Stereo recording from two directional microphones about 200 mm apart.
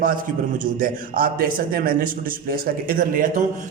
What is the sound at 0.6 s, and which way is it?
A man's voice, 45° right (ahead or behind).